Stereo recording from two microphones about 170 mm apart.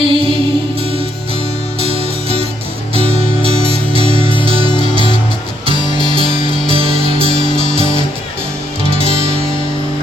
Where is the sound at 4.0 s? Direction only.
30° right (ahead or behind).